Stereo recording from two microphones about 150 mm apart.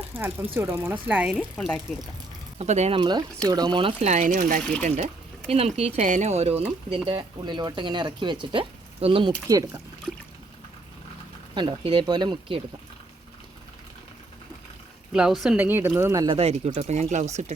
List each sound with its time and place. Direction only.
0.2 s speech: 15° right (ahead or behind)
1.5 s speech: 5° left (ahead or behind)
2.6 s speech: 50° right (ahead or behind)
3.0 s speech: 30° right (ahead or behind)
4.0 s speech: 55° right (ahead or behind)
5.5 s speech: 40° right (ahead or behind)
6.9 s speech: 35° right (ahead or behind)
9.5 s speech: 20° right (ahead or behind)
11.5 s speech: 35° right (ahead or behind)
15.1 s speech: 5° right (ahead or behind); by 16.2 s 20° right (ahead or behind)
16.2 s speech: 40° right (ahead or behind)